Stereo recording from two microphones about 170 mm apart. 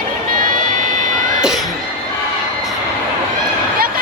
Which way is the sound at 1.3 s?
5° right (ahead or behind).